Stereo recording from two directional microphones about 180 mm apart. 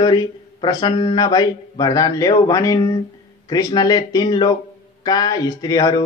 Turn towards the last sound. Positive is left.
turn(degrees=20)  # may be behind; listen again after turning